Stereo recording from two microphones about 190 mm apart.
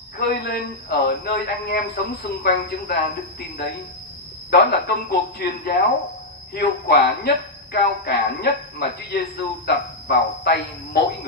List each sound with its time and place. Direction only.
0.2 s speech: 60° left (ahead or behind)